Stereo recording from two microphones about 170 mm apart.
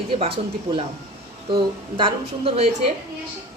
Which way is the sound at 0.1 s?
35° right (ahead or behind).